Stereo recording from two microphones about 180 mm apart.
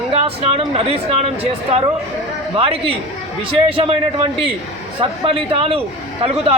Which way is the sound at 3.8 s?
30° right (ahead or behind).